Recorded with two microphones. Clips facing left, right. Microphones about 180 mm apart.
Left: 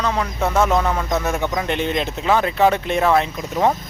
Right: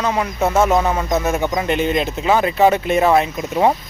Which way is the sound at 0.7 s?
10° right (ahead or behind).